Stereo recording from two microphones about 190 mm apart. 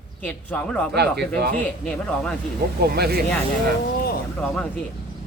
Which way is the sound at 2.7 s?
55° right (ahead or behind).